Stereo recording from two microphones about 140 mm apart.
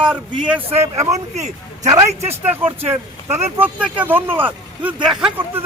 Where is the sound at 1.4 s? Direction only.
55° right (ahead or behind).